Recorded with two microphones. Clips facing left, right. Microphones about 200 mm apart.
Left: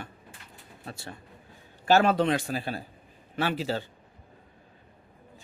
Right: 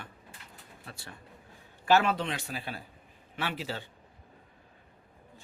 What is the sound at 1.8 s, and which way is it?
Speech, 40° left (ahead or behind).